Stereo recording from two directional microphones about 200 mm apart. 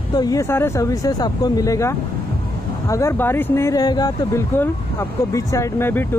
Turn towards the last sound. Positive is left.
turn(degrees=10)  # may be behind; listen again after turning